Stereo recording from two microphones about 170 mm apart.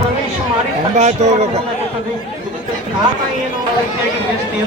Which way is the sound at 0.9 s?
40° right (ahead or behind).